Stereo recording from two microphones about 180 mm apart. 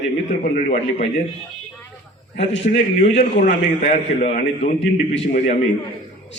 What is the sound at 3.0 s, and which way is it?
A man's voice, 40° left (ahead or behind).